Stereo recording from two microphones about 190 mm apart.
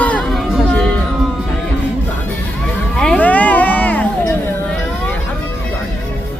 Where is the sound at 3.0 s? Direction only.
5° left (ahead or behind).